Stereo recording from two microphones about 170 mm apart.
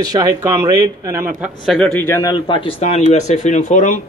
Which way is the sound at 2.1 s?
20° left (ahead or behind).